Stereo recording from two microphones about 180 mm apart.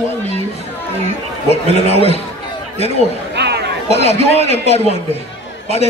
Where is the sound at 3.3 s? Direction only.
65° right (ahead or behind).